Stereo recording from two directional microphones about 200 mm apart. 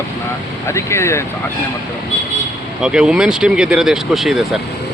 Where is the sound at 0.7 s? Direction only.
15° left (ahead or behind).